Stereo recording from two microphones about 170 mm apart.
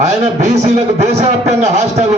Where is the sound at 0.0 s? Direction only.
40° right (ahead or behind).